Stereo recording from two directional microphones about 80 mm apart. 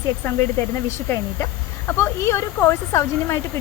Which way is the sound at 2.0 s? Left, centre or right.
Left.